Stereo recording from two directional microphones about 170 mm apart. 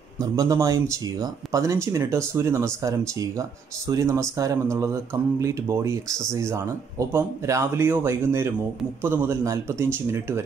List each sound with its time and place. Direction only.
0.2 s speech: 20° right (ahead or behind)